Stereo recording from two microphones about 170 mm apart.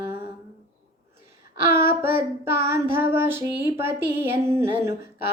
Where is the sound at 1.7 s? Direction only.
15° right (ahead or behind).